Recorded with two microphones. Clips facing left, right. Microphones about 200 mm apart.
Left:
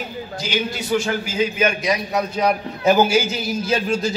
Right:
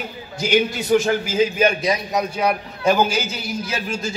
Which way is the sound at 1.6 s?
35° right (ahead or behind).